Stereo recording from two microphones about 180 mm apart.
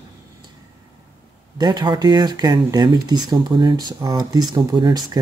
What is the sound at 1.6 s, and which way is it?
Speech, 25° right (ahead or behind).